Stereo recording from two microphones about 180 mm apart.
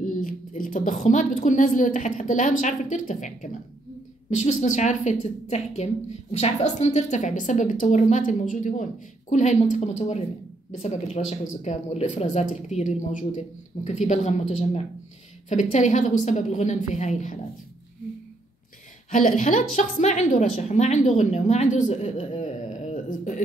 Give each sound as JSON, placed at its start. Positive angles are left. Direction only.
{"t": 0.0, "sound": "a woman's voice", "side_deg": 45}
{"t": 4.4, "sound": "a woman's voice", "side_deg": 40}
{"t": 15.5, "sound": "a woman's voice", "side_deg": 40}
{"t": 19.1, "sound": "a woman's voice", "side_deg": 45}